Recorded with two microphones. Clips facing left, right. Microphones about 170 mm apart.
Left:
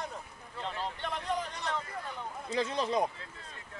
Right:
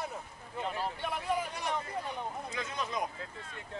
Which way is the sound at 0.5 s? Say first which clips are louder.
Right 2 dB; 10° right (ahead or behind).